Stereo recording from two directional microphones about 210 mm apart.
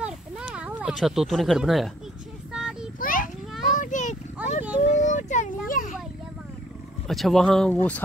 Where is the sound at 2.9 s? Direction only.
40° left (ahead or behind).